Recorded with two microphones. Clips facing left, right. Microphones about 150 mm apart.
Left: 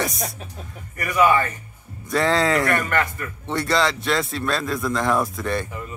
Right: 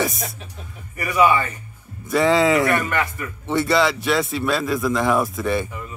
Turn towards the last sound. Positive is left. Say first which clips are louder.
# right 2 dB
turn(degrees=0)  # may be behind; listen again after turning